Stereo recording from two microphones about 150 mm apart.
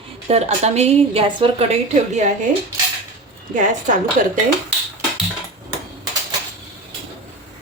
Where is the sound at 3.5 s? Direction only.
60° right (ahead or behind).